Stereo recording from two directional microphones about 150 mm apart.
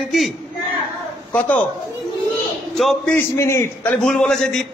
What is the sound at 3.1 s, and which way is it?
Speech, 20° left (ahead or behind).